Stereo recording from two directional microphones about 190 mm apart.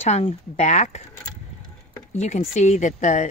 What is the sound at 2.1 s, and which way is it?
Speech, 35° left (ahead or behind).